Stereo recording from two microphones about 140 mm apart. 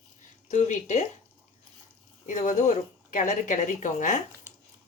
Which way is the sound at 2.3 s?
60° left (ahead or behind).